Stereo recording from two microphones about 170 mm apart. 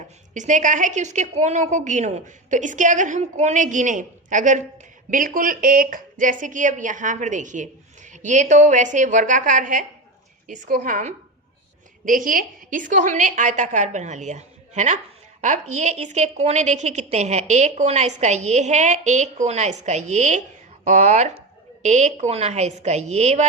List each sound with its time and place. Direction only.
0.3 s a woman's voice: 50° right (ahead or behind)